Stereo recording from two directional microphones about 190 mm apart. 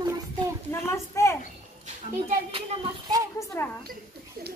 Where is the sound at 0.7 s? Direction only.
15° left (ahead or behind).